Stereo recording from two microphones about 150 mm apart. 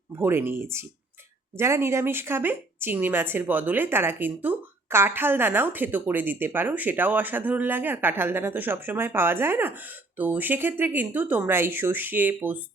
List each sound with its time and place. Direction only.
0.2 s speech: 15° right (ahead or behind)